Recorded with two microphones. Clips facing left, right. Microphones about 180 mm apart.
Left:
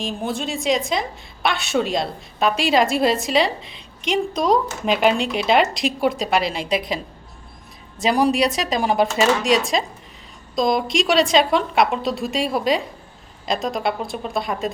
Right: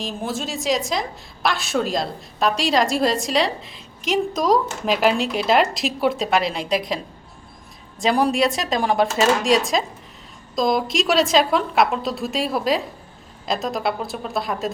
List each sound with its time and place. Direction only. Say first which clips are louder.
0.0 s a woman's voice: left 2 dB; centre (ahead or behind)